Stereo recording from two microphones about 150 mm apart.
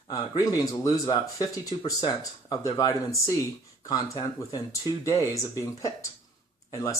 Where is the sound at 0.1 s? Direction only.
25° left (ahead or behind).